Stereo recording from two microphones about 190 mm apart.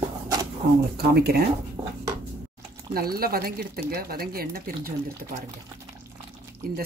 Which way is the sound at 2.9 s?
50° right (ahead or behind).